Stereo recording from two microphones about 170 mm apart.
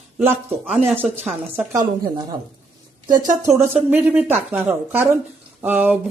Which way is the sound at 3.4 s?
15° right (ahead or behind).